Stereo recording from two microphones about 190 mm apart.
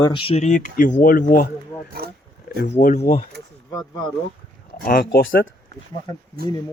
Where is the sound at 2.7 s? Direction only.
40° left (ahead or behind).